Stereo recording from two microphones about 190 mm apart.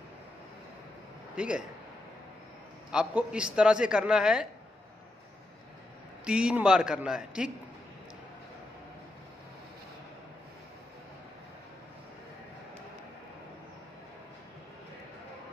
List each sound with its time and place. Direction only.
1.3 s a man's voice: 5° right (ahead or behind)
2.9 s a man's voice: 5° right (ahead or behind)
6.2 s a man's voice: 5° right (ahead or behind)